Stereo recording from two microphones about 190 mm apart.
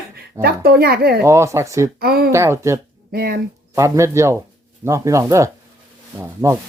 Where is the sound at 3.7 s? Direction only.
15° right (ahead or behind).